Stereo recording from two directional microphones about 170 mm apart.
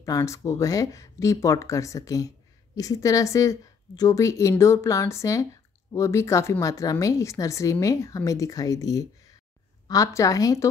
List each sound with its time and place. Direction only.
0.0 s speech: 20° left (ahead or behind)